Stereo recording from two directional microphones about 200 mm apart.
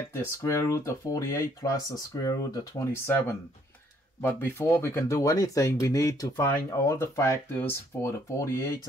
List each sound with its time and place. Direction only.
0.1 s speech: 15° left (ahead or behind)